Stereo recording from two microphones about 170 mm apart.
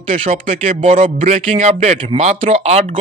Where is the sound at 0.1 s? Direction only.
40° right (ahead or behind).